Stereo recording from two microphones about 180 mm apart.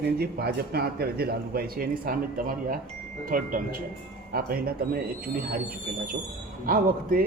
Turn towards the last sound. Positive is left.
turn(degrees=-55)  # may be behind; listen again after turning